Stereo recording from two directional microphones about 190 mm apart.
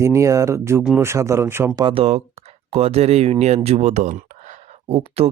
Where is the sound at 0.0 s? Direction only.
15° right (ahead or behind).